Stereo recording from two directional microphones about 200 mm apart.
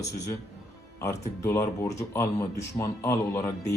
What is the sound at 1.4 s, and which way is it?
Speech, 15° left (ahead or behind).